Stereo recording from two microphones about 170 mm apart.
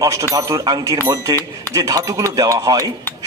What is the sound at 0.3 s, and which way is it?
A man's voice, 20° right (ahead or behind).